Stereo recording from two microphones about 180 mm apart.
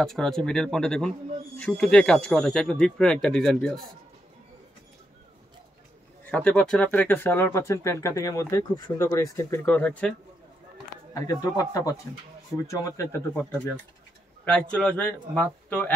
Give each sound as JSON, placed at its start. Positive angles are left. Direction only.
{"t": 0.0, "sound": "speech", "side_deg": 0}
{"t": 6.3, "sound": "speech", "side_deg": 5}
{"t": 11.2, "sound": "a man's voice", "side_deg": 20}
{"t": 14.4, "sound": "speech", "side_deg": 5}